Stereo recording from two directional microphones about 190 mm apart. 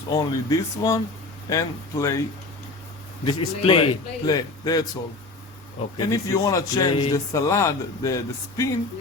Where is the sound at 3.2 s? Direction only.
30° left (ahead or behind).